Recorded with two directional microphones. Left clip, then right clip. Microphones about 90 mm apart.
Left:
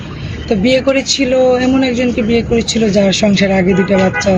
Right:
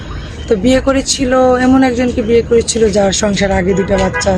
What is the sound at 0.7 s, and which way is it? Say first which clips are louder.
Speech: left 2 dB; 55° right (ahead or behind).